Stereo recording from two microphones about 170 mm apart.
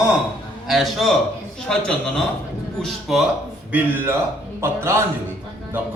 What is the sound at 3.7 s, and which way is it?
A man's voice, 10° right (ahead or behind).